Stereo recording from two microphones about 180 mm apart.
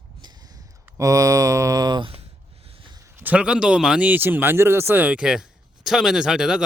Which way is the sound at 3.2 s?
5° right (ahead or behind).